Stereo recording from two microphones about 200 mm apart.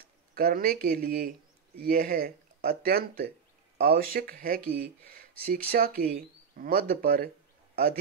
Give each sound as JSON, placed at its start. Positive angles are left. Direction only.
{"t": 0.3, "sound": "a man's voice", "side_deg": -45}